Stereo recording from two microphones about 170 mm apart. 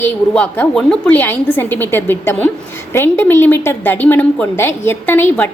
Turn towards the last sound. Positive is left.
turn(degrees=10)  # may be behind; listen again after turning